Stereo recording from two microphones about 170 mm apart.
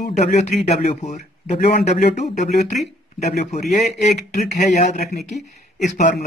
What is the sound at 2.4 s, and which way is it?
A man's voice, 45° left (ahead or behind).